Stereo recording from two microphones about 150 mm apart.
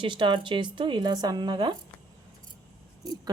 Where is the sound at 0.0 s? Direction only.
30° right (ahead or behind).